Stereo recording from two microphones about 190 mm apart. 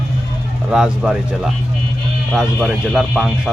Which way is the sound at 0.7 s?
5° right (ahead or behind).